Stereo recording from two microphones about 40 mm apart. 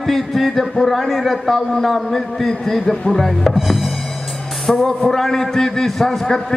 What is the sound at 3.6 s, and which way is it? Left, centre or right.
Music, centre.